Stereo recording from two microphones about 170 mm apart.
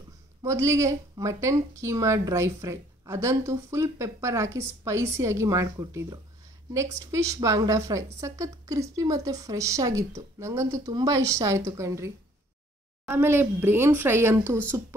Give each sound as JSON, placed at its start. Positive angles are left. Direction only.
{"t": 0.4, "sound": "speech", "side_deg": -15}